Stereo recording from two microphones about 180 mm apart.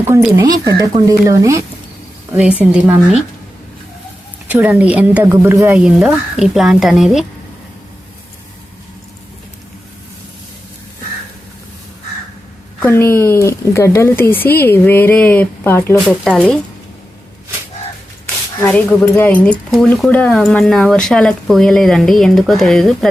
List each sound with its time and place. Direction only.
0.3 s speech: 20° right (ahead or behind)
4.4 s speech: 10° right (ahead or behind)
12.8 s speech: 10° left (ahead or behind)
18.6 s speech: 10° left (ahead or behind)